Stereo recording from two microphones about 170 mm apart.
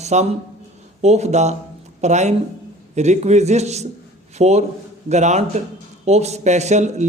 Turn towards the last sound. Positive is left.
turn(degrees=-45)  # may be behind; listen again after turning